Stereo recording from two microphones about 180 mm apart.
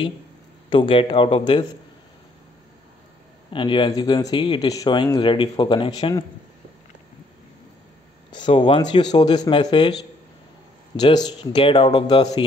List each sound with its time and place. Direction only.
0.7 s speech: 30° left (ahead or behind)
3.5 s speech: 25° left (ahead or behind)
8.5 s speech: 30° left (ahead or behind)
11.0 s speech: 25° left (ahead or behind)